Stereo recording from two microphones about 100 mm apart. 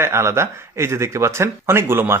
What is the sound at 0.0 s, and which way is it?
Speech, 25° right (ahead or behind).